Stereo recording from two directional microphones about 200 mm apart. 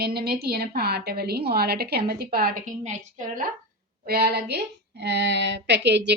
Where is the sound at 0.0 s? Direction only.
50° right (ahead or behind).